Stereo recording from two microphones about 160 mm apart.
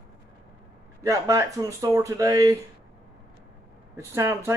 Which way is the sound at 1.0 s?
20° right (ahead or behind).